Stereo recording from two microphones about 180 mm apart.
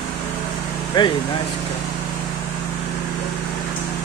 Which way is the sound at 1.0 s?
25° left (ahead or behind).